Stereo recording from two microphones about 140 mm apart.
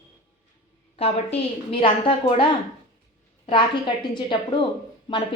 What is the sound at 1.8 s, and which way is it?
A woman's voice, 40° left (ahead or behind).